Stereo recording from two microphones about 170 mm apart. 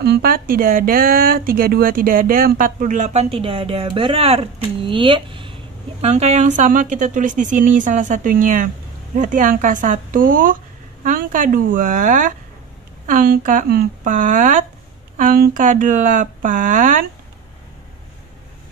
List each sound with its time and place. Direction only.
0.0 s a woman's voice: 65° right (ahead or behind); by 17.0 s 50° right (ahead or behind)